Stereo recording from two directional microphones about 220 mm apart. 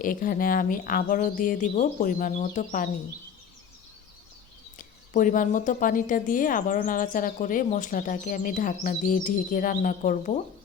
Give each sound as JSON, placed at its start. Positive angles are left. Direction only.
{"t": 0.0, "sound": "a woman's voice", "side_deg": 40}
{"t": 4.8, "sound": "a woman's voice", "side_deg": 35}